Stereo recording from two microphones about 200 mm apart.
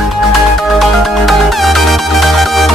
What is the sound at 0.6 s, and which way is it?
Music, centre (ahead or behind).